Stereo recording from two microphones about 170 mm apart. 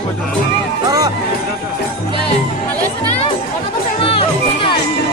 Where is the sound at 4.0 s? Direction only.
30° left (ahead or behind).